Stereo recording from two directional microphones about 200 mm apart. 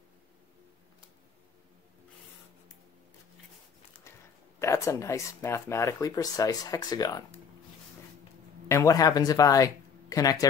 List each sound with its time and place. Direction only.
4.6 s speech: 15° left (ahead or behind)
8.6 s speech: 15° left (ahead or behind)